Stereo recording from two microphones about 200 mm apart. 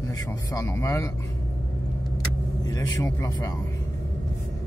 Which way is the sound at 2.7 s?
15° left (ahead or behind).